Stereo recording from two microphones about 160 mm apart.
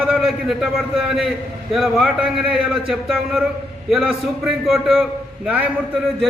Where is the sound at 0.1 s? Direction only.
Centre (ahead or behind).